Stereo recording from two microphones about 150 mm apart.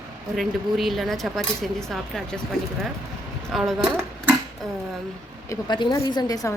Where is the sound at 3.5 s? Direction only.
Centre (ahead or behind).